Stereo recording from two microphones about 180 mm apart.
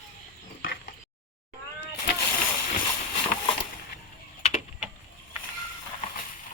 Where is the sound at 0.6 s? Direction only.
55° left (ahead or behind).